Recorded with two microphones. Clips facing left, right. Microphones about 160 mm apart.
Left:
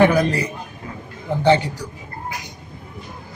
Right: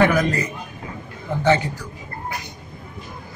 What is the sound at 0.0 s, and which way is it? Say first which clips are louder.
Speech: left 3 dB; 15° left (ahead or behind).